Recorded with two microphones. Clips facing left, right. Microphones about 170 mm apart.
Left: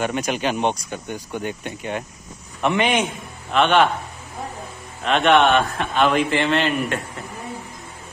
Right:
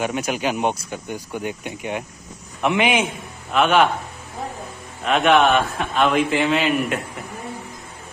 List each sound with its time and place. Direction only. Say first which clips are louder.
0.0 s a man's voice: even; 5° right (ahead or behind)
5.0 s a man's voice: even; centre (ahead or behind)